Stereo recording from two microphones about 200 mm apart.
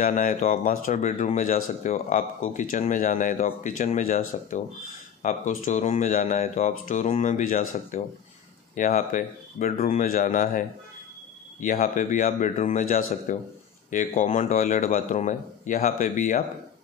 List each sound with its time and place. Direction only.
0.0 s speech: 40° left (ahead or behind)
11.6 s speech: 40° left (ahead or behind)